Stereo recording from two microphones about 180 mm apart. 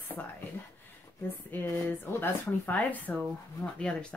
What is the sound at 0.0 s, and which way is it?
Speech, 10° left (ahead or behind).